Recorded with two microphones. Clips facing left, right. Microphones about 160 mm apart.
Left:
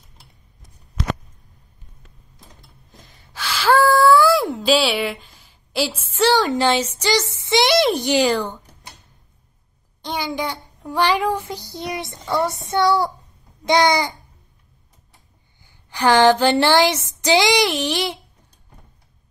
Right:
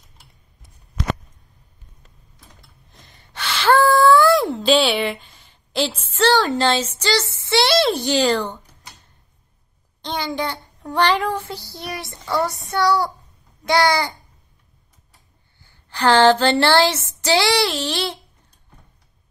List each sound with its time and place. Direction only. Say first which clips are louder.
2.9 s a sound: even; centre (ahead or behind)
10.0 s child singing: even; 10° left (ahead or behind)
15.6 s speech: even; 15° left (ahead or behind)